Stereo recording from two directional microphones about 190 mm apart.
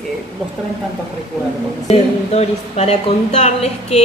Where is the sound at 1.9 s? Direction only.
35° left (ahead or behind).